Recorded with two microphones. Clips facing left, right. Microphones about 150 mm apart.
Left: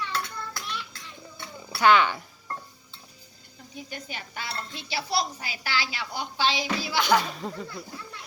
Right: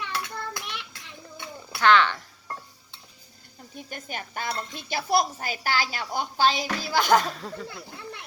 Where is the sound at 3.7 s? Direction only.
50° right (ahead or behind).